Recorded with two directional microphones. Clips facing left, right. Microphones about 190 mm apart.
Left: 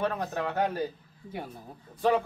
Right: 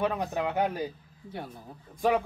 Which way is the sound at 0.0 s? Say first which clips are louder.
Right 1 dB; 15° right (ahead or behind).